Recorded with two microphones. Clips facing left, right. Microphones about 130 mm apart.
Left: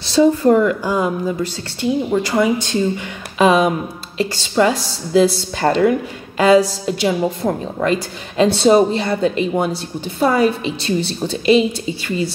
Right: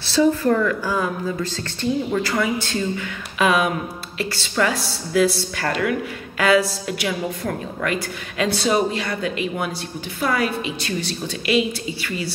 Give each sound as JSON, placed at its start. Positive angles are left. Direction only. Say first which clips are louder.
{"t": 0.0, "sound": "a woman's voice", "louder": "left 5 dB", "side_deg": 20}